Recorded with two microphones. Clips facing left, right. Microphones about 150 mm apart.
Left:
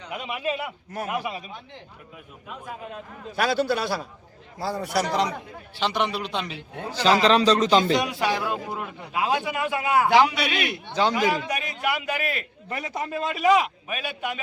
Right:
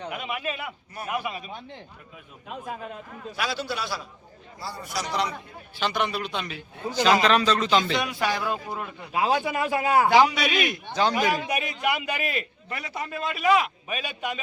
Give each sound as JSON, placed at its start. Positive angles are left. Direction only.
{"t": 0.2, "sound": "a man's voice", "side_deg": 25}
{"t": 3.3, "sound": "a man's voice", "side_deg": 50}
{"t": 4.7, "sound": "a man's voice", "side_deg": 70}
{"t": 5.1, "sound": "speech", "side_deg": 40}
{"t": 5.8, "sound": "a man's voice", "side_deg": 25}
{"t": 8.0, "sound": "a man's voice", "side_deg": 20}
{"t": 8.4, "sound": "a man's voice", "side_deg": 5}
{"t": 9.1, "sound": "a man's voice", "side_deg": -30}
{"t": 10.2, "sound": "a man's voice", "side_deg": -15}
{"t": 11.2, "sound": "a man's voice", "side_deg": 25}
{"t": 11.8, "sound": "a man's voice", "side_deg": 0}
{"t": 12.6, "sound": "a man's voice", "side_deg": 40}
{"t": 13.8, "sound": "a man's voice", "side_deg": 5}